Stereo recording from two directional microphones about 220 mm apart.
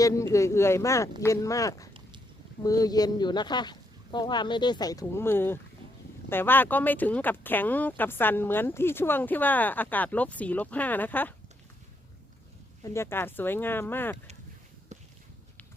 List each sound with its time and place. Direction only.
0.0 s speech: 15° left (ahead or behind)
12.8 s speech: 10° left (ahead or behind)